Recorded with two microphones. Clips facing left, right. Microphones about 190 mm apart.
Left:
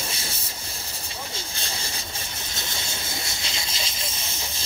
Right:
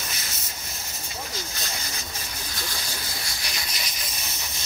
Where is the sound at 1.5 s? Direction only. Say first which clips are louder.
Even; 30° left (ahead or behind).